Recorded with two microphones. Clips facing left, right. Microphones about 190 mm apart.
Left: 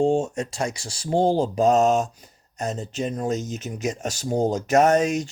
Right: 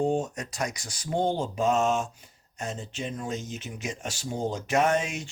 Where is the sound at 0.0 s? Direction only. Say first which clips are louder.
Left 6 dB; 25° left (ahead or behind).